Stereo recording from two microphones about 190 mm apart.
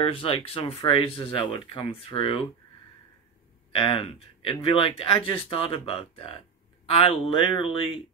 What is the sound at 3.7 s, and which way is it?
Speech, 30° left (ahead or behind).